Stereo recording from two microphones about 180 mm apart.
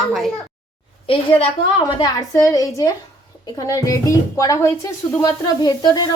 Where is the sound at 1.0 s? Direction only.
30° left (ahead or behind).